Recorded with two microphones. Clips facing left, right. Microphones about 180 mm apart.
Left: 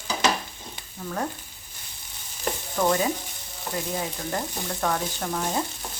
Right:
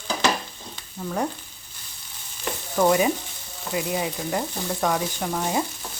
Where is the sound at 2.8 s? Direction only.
15° right (ahead or behind).